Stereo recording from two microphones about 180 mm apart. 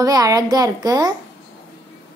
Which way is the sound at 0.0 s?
20° right (ahead or behind).